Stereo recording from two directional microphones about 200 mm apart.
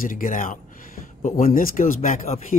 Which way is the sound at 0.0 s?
45° left (ahead or behind).